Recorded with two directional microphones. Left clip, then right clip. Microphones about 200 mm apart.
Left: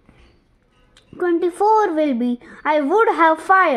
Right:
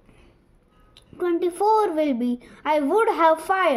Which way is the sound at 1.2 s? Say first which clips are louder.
Left 4 dB; 45° left (ahead or behind).